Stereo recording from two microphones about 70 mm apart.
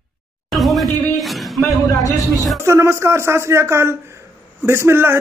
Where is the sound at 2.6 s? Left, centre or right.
Right.